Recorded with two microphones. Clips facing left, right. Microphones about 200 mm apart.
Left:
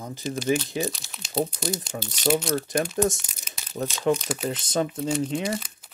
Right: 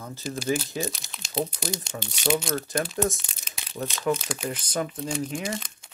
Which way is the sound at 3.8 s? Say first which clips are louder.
Left 3 dB; 35° left (ahead or behind).